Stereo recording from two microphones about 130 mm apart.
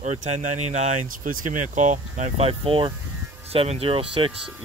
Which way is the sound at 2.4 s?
45° right (ahead or behind).